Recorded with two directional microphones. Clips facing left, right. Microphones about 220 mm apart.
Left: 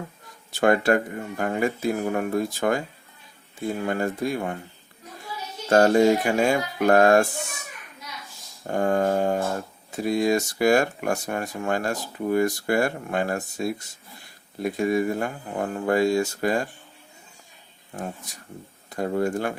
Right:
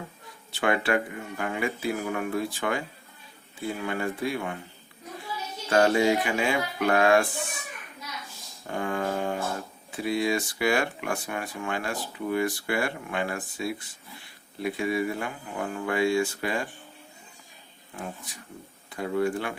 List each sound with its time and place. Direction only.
0.5 s speech: 45° left (ahead or behind)
5.6 s speech: 40° left (ahead or behind)
8.6 s speech: 45° left (ahead or behind)
17.9 s speech: 40° left (ahead or behind)